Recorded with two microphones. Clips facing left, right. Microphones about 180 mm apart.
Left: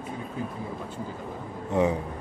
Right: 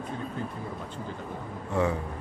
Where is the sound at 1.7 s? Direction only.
20° left (ahead or behind).